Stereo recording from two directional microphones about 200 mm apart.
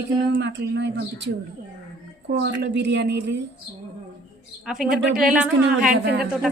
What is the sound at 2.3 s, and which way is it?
A woman's voice, 60° right (ahead or behind).